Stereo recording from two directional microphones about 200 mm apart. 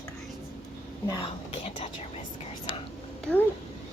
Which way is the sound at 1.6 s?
30° left (ahead or behind).